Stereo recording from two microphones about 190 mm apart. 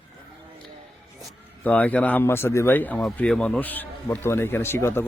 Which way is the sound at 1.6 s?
10° left (ahead or behind).